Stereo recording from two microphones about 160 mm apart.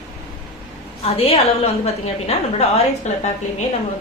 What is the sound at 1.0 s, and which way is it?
A woman's voice, 40° left (ahead or behind).